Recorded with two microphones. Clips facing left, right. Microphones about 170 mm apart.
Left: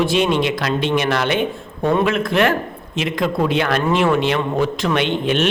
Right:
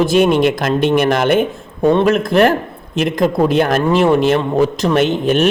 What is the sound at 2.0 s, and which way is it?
A man's voice, 40° right (ahead or behind).